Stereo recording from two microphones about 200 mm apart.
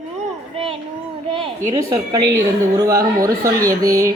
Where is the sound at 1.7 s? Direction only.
15° right (ahead or behind).